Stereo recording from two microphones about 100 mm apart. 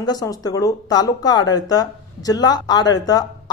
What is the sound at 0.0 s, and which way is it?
Speech, 40° left (ahead or behind).